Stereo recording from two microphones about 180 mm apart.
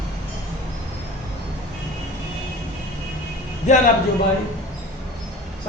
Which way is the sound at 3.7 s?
40° left (ahead or behind).